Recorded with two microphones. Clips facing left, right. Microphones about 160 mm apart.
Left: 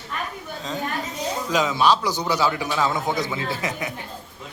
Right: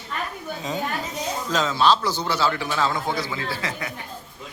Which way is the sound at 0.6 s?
10° right (ahead or behind).